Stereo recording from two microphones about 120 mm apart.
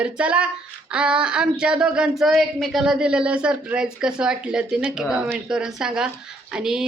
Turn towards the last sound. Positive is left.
turn(degrees=-5)  # may be behind; listen again after turning